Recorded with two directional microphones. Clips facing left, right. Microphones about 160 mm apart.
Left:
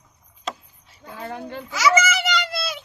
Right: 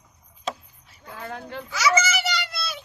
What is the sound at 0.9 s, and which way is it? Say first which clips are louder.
Speech: left 3 dB; 20° left (ahead or behind).